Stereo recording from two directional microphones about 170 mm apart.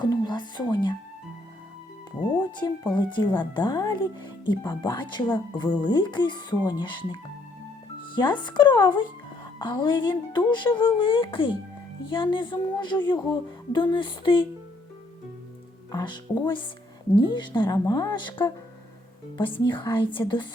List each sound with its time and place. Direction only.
0.0 s speech: 25° left (ahead or behind)
2.3 s speech: 25° left (ahead or behind)
15.9 s speech: 25° left (ahead or behind)